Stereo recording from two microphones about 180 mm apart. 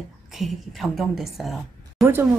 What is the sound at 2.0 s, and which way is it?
Speech, 15° right (ahead or behind).